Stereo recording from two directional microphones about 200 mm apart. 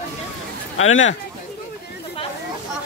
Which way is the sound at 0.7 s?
85° left.